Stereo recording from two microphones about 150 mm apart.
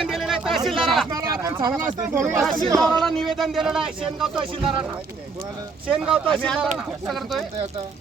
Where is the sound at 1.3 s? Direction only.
20° right (ahead or behind).